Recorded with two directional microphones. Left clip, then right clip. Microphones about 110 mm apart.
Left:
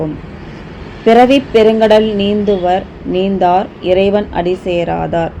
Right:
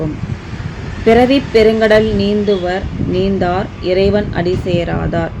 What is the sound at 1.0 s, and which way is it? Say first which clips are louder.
A woman's voice: left 3 dB; 35° left (ahead or behind).